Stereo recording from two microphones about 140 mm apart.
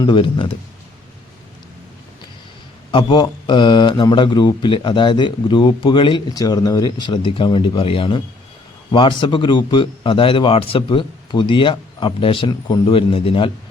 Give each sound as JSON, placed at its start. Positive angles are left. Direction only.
{"t": 0.0, "sound": "a man's voice", "side_deg": 35}
{"t": 2.9, "sound": "a man's voice", "side_deg": 35}
{"t": 12.8, "sound": "a man's voice", "side_deg": 40}